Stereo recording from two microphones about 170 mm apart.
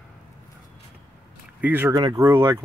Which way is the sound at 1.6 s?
10° right (ahead or behind).